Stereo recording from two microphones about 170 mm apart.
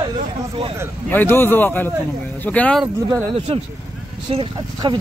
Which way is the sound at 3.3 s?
35° right (ahead or behind).